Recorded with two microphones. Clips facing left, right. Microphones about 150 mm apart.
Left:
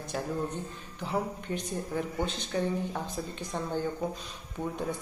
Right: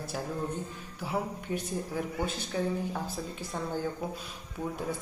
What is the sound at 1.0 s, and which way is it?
A man's voice, 5° right (ahead or behind).